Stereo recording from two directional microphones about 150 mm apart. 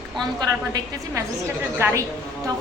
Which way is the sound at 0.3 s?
25° right (ahead or behind).